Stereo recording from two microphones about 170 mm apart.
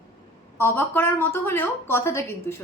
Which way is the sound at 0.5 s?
15° left (ahead or behind).